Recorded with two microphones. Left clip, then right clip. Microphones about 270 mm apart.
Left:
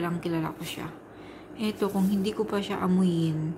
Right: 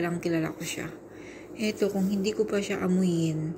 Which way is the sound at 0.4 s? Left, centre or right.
Left.